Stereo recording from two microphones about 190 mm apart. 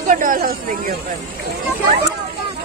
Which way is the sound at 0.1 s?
45° right (ahead or behind).